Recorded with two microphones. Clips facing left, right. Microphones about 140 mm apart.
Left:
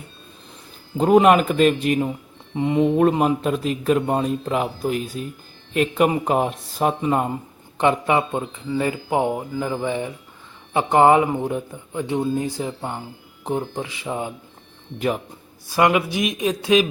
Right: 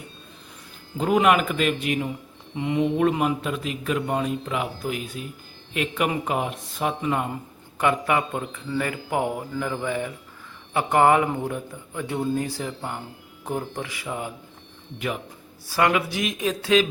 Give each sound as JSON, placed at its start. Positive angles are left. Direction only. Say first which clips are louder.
{"t": 0.9, "sound": "speech", "louder": "left 5 dB", "side_deg": 35}
{"t": 7.8, "sound": "speech", "louder": "left 4 dB", "side_deg": 25}
{"t": 14.9, "sound": "speech", "louder": "left 6 dB", "side_deg": 35}
{"t": 15.7, "sound": "speech", "louder": "left 4 dB", "side_deg": 20}